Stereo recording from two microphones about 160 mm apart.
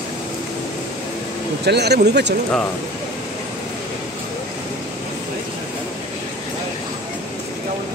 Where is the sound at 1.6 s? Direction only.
90° right.